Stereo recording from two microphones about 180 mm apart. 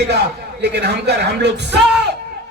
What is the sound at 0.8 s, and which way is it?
Speech, 65° right (ahead or behind).